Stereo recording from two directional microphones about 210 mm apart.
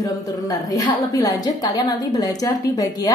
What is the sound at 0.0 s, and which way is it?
A woman's voice, 15° left (ahead or behind).